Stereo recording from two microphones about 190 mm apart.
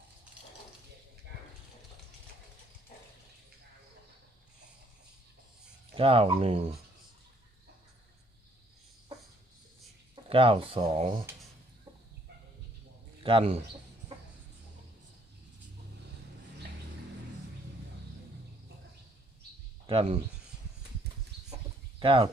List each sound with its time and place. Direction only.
5.9 s speech: 30° right (ahead or behind)
10.2 s speech: 30° right (ahead or behind)
13.2 s speech: 30° right (ahead or behind)
19.9 s speech: 30° right (ahead or behind)
21.3 s bird: 60° right (ahead or behind)
21.9 s speech: 25° right (ahead or behind)